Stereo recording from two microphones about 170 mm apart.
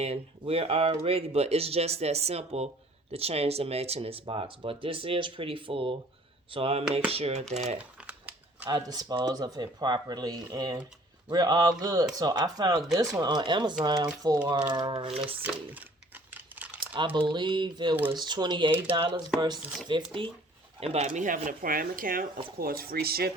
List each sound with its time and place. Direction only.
0.0 s speech: 35° right (ahead or behind)
7.8 s crumpling: 10° right (ahead or behind)
8.7 s speech: 25° right (ahead or behind)
15.4 s crumpling: 10° right (ahead or behind)
16.8 s crumpling: 30° right (ahead or behind)
17.2 s speech: 25° right (ahead or behind)
19.5 s speech: centre (ahead or behind)
19.9 s speech: 30° right (ahead or behind); by 23.3 s 65° right (ahead or behind)